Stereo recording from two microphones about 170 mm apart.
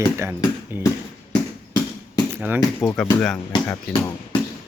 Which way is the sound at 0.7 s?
10° right (ahead or behind).